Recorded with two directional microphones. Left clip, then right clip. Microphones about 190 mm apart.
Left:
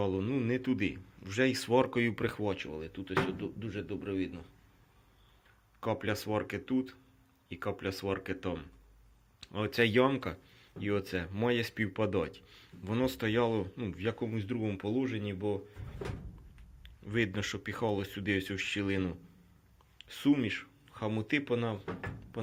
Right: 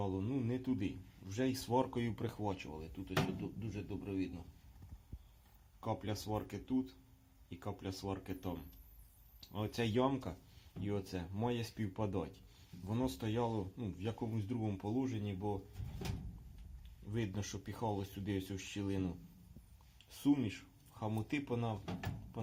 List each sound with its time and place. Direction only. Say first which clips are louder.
0.0 s a man's voice: left 7 dB; 15° left (ahead or behind); by 4.4 s 5° right (ahead or behind)
5.8 s speech: left 8 dB; 20° left (ahead or behind)
14.3 s speech: left 6 dB; centre (ahead or behind)
17.1 s speech: left 10 dB; 15° left (ahead or behind)
20.3 s speech: left 6 dB; 5° left (ahead or behind)